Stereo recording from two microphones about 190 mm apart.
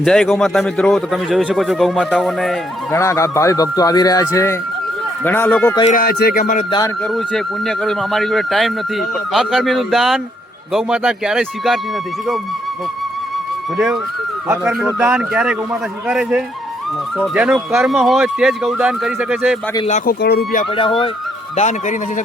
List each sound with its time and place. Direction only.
0.0 s speech: centre (ahead or behind)
2.9 s speech: 15° left (ahead or behind)
5.9 s speech: 50° left (ahead or behind)
6.7 s speech: 20° left (ahead or behind)
7.0 s speech: centre (ahead or behind)
13.7 s speech: centre (ahead or behind)
14.4 s a man's voice: 15° right (ahead or behind)
19.9 s speech: 55° left (ahead or behind)
20.7 s speech: 25° left (ahead or behind)
21.5 s speech: 35° left (ahead or behind)